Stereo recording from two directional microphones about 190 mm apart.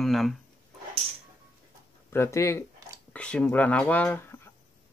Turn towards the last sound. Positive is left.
turn(degrees=10)  # may be behind; listen again after turning